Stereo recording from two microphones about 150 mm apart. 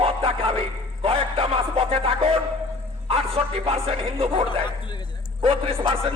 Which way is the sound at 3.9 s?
40° right (ahead or behind).